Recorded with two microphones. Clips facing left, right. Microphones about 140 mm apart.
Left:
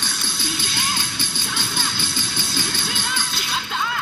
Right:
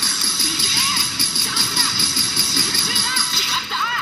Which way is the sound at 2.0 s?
50° left (ahead or behind).